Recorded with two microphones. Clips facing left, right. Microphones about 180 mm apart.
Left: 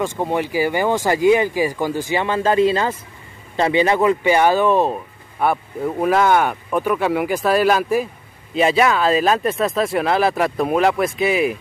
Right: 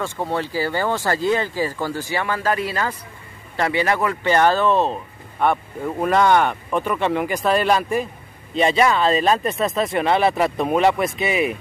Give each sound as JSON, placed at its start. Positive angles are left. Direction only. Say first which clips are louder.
{"t": 0.0, "sound": "speech", "louder": "left 3 dB", "side_deg": 15}